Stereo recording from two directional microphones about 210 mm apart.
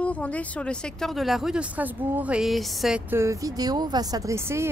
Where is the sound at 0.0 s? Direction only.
5° left (ahead or behind).